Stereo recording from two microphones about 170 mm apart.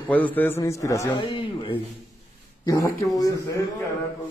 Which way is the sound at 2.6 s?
20° left (ahead or behind).